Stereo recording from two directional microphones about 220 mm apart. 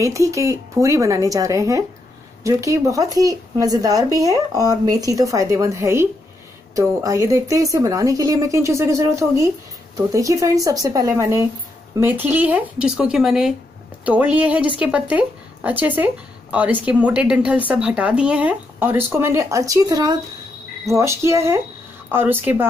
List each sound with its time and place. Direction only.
0.0 s speech: 15° right (ahead or behind)